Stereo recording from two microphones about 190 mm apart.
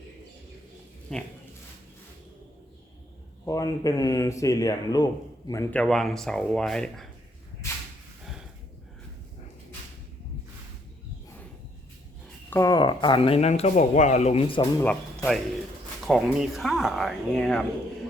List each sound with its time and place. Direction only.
1.1 s speech: 5° left (ahead or behind)
3.4 s speech: 20° left (ahead or behind)
5.8 s speech: centre (ahead or behind)
12.5 s speech: 15° left (ahead or behind)
14.8 s speech: 15° left (ahead or behind)
16.0 s speech: centre (ahead or behind)